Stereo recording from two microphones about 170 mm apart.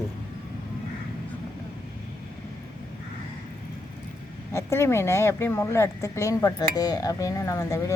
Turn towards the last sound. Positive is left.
turn(degrees=20)  # may be behind; listen again after turning